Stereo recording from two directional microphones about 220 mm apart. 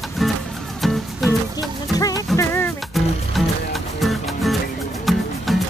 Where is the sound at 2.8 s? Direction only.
Centre (ahead or behind).